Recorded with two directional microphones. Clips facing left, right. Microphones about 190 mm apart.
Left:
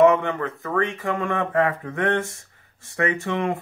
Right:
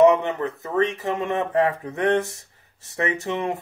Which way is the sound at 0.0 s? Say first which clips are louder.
Right 1 dB; 20° right (ahead or behind).